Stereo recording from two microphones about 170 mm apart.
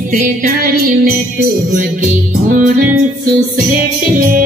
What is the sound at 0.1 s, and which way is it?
Music, 50° right (ahead or behind).